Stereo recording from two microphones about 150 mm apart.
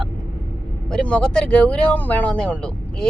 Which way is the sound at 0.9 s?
5° left (ahead or behind).